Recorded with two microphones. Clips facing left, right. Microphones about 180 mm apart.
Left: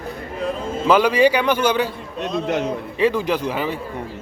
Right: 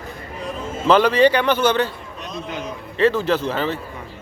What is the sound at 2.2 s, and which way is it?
Speech, 65° left (ahead or behind).